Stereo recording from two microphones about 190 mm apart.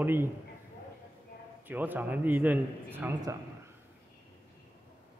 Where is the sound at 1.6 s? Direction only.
10° right (ahead or behind).